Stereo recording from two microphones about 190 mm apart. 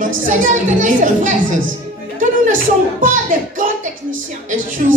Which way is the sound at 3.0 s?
45° right (ahead or behind).